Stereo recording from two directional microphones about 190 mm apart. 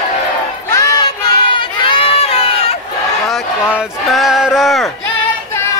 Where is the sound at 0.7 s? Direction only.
20° left (ahead or behind).